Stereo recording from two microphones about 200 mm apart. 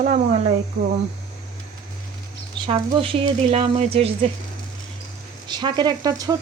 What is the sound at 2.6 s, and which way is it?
Speech, 30° right (ahead or behind).